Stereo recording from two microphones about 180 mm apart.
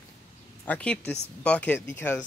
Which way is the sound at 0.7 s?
5° left (ahead or behind).